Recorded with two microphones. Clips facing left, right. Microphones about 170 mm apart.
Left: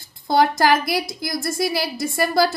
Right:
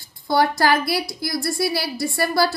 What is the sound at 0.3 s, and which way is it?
A woman's voice, 20° left (ahead or behind).